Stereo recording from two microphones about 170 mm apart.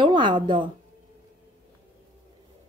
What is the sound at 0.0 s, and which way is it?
Speech, 25° right (ahead or behind).